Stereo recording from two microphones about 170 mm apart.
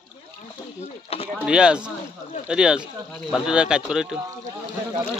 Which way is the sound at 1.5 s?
5° right (ahead or behind).